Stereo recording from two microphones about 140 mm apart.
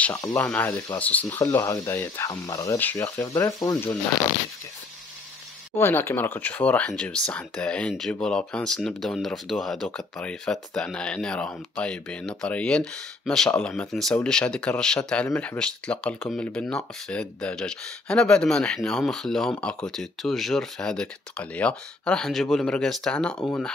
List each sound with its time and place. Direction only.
0.0 s speech: 15° left (ahead or behind)
1.4 s speech: 25° left (ahead or behind)
5.8 s speech: 15° left (ahead or behind)